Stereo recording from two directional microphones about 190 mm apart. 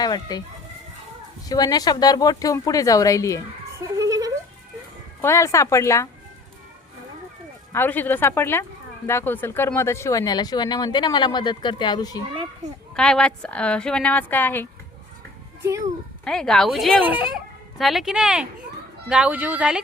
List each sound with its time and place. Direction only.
0.0 s speech: 20° left (ahead or behind)
1.5 s speech: 20° left (ahead or behind)
3.8 s a sound: 15° right (ahead or behind)
5.2 s speech: 15° left (ahead or behind)
7.7 s speech: 10° left (ahead or behind)
12.9 s speech: 5° left (ahead or behind)
16.2 s speech: 5° left (ahead or behind)